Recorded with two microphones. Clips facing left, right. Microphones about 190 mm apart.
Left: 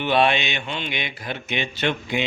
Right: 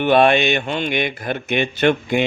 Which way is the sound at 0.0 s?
50° right (ahead or behind).